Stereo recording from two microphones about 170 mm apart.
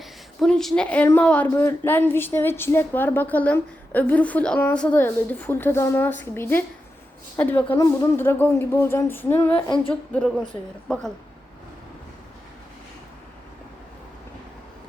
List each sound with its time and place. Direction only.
0.0 s a woman's voice: centre (ahead or behind)
9.6 s humming: 30° left (ahead or behind)
9.9 s a woman's voice: 5° left (ahead or behind)